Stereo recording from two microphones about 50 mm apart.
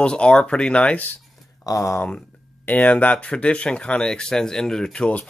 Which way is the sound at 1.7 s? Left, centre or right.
Left.